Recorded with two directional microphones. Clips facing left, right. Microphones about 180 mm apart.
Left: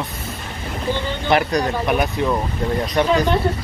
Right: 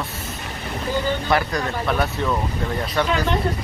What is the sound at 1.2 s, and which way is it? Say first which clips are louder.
Speech: left 4 dB; 20° left (ahead or behind).